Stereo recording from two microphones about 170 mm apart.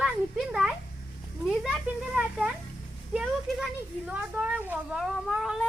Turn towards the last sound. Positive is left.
turn(degrees=-5)  # may be behind; listen again after turning